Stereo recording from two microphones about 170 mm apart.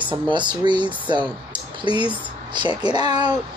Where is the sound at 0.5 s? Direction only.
30° right (ahead or behind).